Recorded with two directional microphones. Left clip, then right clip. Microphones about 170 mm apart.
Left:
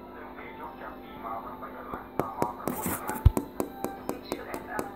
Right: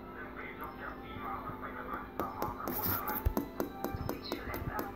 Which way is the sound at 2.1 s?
55° left (ahead or behind).